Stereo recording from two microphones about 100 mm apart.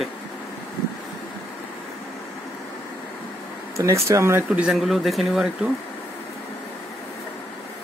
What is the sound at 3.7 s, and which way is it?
Speech, 30° right (ahead or behind).